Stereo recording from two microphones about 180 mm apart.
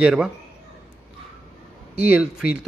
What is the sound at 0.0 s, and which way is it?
Speech, 5° right (ahead or behind).